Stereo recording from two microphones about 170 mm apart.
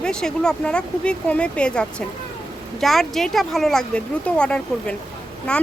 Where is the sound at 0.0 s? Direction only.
5° left (ahead or behind).